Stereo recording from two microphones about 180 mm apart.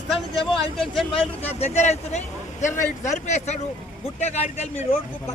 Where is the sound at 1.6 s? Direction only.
40° left (ahead or behind).